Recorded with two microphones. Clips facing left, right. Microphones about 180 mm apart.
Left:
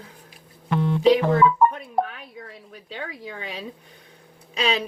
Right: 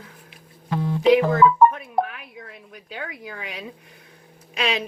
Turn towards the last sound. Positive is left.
turn(degrees=35)  # may be behind; listen again after turning